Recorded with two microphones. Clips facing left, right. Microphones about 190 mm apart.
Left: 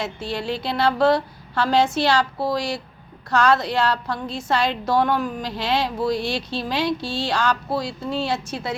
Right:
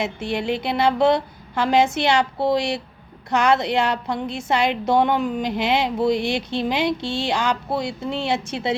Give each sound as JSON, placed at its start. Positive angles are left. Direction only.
{"t": 0.0, "sound": "a woman's voice", "side_deg": -20}